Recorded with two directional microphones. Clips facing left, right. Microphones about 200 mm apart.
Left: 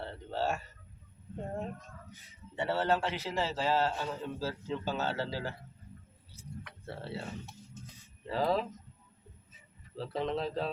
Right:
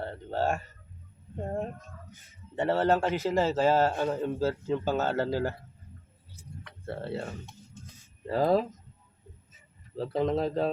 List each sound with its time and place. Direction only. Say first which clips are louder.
0.0 s a sound: right 4 dB; 50° right (ahead or behind)
2.6 s a man's voice: right 5 dB; 45° right (ahead or behind)
6.8 s a man's voice: right 7 dB; 55° right (ahead or behind)
8.3 s a man's voice: right 6 dB; 45° right (ahead or behind)
10.0 s a man's voice: right 6 dB; 45° right (ahead or behind)